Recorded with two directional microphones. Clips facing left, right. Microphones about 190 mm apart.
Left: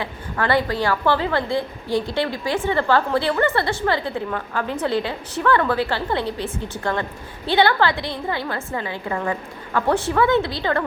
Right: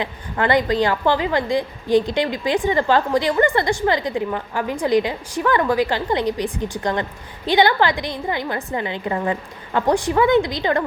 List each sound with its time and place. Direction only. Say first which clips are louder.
0.0 s a woman's voice: right 2 dB; 20° right (ahead or behind)